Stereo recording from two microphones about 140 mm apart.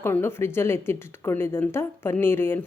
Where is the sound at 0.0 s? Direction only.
15° left (ahead or behind).